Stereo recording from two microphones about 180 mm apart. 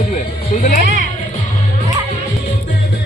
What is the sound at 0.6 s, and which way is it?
Speech, 45° left (ahead or behind).